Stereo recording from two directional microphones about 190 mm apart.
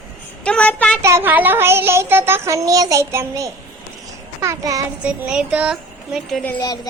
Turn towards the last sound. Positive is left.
turn(degrees=20)  # may be behind; listen again after turning